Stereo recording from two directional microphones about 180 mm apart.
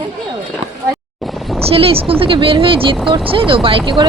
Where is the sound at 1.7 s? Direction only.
30° right (ahead or behind).